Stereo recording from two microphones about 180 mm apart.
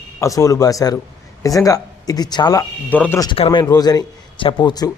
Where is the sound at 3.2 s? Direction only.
30° left (ahead or behind).